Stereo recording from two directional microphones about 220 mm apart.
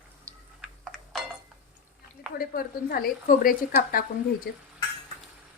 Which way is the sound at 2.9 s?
40° left (ahead or behind).